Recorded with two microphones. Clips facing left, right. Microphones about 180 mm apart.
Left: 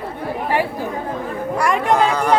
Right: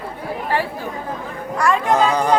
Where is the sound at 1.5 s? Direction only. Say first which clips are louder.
Right 1 dB; 10° left (ahead or behind).